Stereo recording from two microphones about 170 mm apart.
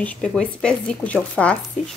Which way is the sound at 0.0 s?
5° left (ahead or behind).